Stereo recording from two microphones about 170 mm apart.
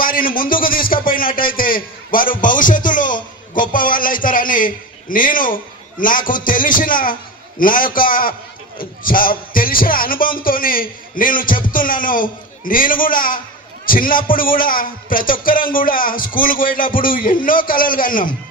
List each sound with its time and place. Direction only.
0.0 s a man's voice: 55° left (ahead or behind)